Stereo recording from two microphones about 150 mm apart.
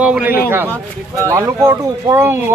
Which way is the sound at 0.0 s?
10° right (ahead or behind).